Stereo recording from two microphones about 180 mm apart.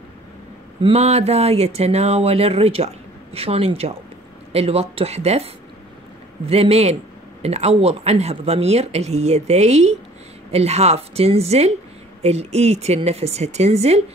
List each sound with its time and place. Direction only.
0.8 s speech: 35° right (ahead or behind)